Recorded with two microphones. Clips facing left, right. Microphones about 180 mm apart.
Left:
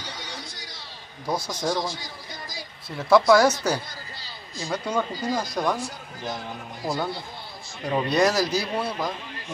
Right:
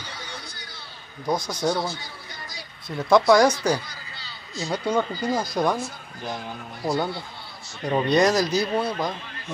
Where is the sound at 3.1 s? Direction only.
5° left (ahead or behind).